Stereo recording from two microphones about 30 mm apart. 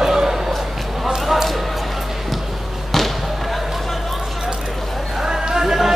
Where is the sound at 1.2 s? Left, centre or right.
Centre.